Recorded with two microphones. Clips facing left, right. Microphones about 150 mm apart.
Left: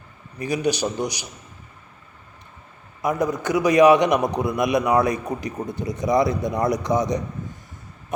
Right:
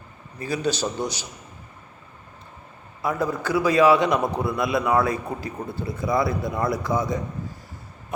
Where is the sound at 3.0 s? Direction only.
15° left (ahead or behind).